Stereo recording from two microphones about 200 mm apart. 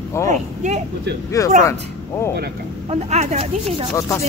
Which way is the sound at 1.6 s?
15° left (ahead or behind).